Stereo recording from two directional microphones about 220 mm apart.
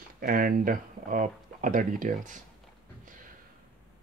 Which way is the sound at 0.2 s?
40° right (ahead or behind).